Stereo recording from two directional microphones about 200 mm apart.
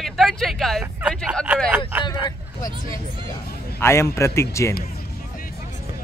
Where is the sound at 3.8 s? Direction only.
15° left (ahead or behind).